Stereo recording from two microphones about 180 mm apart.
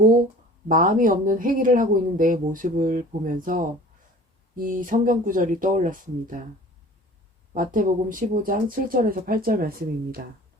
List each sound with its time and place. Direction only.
0.7 s speech: 50° right (ahead or behind)
7.5 s speech: 50° right (ahead or behind)